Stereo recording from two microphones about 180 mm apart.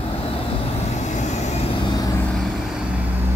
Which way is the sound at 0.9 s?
40° left (ahead or behind).